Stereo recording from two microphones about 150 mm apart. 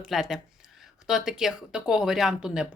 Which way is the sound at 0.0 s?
Centre (ahead or behind).